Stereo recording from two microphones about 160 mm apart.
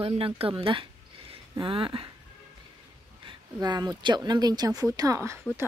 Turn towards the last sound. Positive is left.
turn(degrees=-20)  # may be behind; listen again after turning